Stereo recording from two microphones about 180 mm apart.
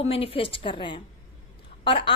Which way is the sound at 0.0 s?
30° left (ahead or behind).